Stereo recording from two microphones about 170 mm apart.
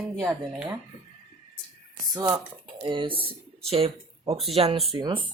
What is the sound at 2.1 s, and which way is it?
Speech, 25° right (ahead or behind).